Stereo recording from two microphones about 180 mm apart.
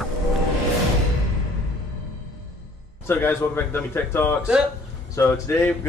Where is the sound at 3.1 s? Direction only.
10° left (ahead or behind).